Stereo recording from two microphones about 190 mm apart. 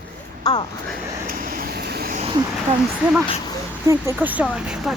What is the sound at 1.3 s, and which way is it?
Vehicle, 45° right (ahead or behind).